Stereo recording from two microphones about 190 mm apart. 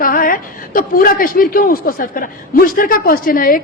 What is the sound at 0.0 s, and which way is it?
A man's voice, 45° left (ahead or behind).